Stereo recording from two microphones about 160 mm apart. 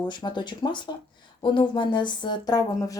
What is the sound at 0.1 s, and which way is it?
Speech, 30° left (ahead or behind).